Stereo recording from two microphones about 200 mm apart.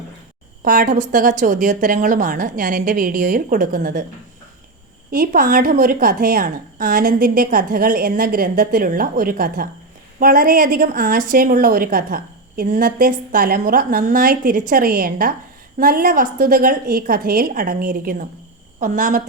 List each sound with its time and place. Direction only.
0.6 s a woman's voice: 45° right (ahead or behind)
5.1 s a woman's voice: 45° right (ahead or behind)